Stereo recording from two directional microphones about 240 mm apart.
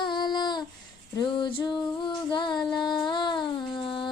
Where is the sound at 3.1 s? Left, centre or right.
Centre.